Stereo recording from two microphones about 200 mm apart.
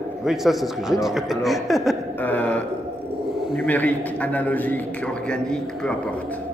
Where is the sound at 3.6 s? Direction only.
10° left (ahead or behind).